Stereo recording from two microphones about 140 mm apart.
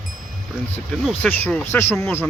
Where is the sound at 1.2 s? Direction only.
10° left (ahead or behind).